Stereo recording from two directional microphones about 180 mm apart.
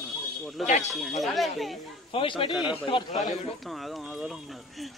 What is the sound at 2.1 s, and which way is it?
Speech, 25° left (ahead or behind).